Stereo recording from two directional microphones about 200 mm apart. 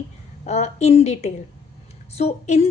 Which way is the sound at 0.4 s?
35° left (ahead or behind).